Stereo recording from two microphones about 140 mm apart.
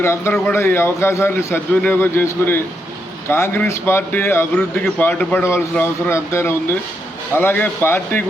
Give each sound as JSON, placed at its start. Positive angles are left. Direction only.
{"t": 0.0, "sound": "a man's voice", "side_deg": 20}